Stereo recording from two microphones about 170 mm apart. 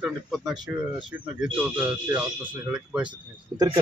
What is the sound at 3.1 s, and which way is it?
Speech, 30° right (ahead or behind).